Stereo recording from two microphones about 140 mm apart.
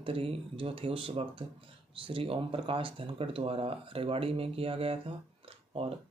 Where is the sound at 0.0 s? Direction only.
40° right (ahead or behind).